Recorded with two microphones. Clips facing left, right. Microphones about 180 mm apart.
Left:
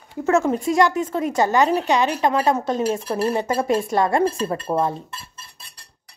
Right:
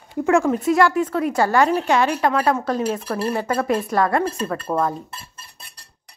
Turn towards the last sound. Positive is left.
turn(degrees=25)  # may be behind; listen again after turning